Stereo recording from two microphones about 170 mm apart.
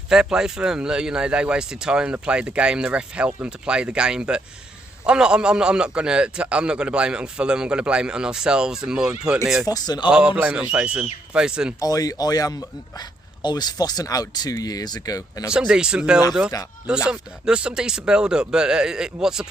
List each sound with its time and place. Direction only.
0.1 s speech: 5° right (ahead or behind)
9.6 s a man's voice: 20° left (ahead or behind)
10.1 s speech: 5° right (ahead or behind)
11.8 s a man's voice: 20° left (ahead or behind)
15.5 s speech: 5° right (ahead or behind)